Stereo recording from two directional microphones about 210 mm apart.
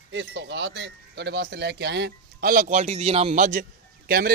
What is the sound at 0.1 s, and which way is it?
Speech, 60° right (ahead or behind).